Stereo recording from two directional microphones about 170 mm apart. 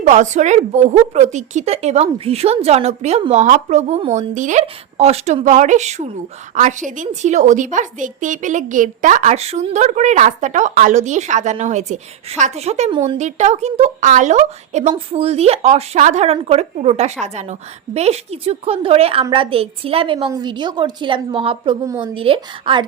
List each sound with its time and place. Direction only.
0.0 s a woman's voice: 45° right (ahead or behind)
12.9 s speech: 30° right (ahead or behind)
13.1 s a woman's voice: 45° right (ahead or behind)